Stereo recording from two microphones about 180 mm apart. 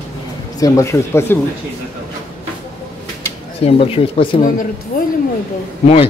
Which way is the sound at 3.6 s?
30° left (ahead or behind).